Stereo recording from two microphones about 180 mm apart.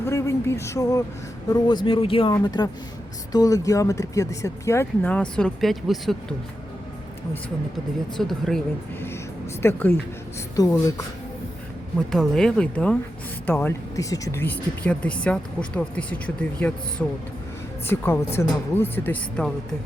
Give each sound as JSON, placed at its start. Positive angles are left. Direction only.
{"t": 0.0, "sound": "speech", "side_deg": 15}
{"t": 8.2, "sound": "speech", "side_deg": 0}
{"t": 9.6, "sound": "speech", "side_deg": 10}
{"t": 11.9, "sound": "speech", "side_deg": 0}